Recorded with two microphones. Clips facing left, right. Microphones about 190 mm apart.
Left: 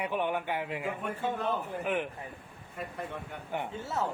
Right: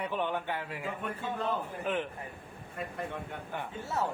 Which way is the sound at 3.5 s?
15° left (ahead or behind).